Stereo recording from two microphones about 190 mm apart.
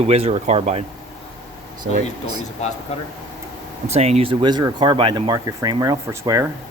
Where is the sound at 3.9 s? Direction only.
35° right (ahead or behind).